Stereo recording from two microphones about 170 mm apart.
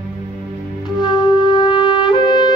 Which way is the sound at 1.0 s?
25° left (ahead or behind).